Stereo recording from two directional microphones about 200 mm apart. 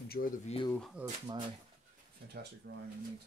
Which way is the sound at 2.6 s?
50° right (ahead or behind).